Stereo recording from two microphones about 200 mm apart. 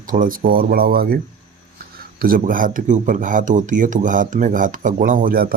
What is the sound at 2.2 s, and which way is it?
Speech, 45° right (ahead or behind).